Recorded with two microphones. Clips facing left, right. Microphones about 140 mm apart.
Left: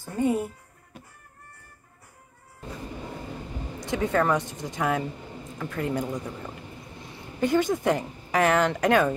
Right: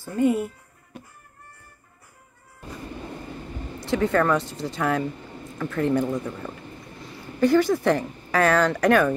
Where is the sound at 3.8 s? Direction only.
15° left (ahead or behind).